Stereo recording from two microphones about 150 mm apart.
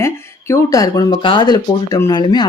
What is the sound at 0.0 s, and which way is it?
Speech, 20° left (ahead or behind).